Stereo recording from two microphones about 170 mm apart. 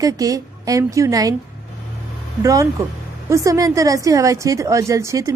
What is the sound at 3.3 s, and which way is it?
A woman's voice, 20° right (ahead or behind).